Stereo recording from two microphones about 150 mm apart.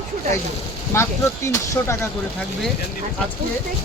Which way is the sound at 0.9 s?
15° left (ahead or behind).